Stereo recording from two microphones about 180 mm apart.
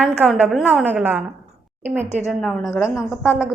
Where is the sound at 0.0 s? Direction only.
5° right (ahead or behind).